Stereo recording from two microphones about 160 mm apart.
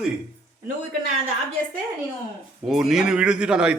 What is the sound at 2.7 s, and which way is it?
A man's voice, centre (ahead or behind).